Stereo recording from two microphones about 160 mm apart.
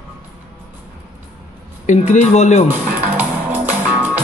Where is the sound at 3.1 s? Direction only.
10° right (ahead or behind).